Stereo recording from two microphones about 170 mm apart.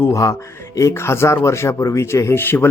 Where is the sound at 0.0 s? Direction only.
20° left (ahead or behind).